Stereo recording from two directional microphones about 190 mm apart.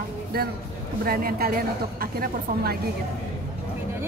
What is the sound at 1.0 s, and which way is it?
A woman's voice, 50° right (ahead or behind).